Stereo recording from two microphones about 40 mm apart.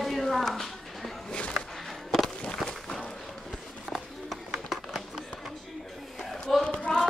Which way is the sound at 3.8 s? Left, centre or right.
Centre.